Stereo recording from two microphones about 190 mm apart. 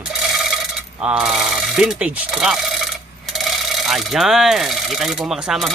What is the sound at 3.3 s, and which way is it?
Speech, centre (ahead or behind).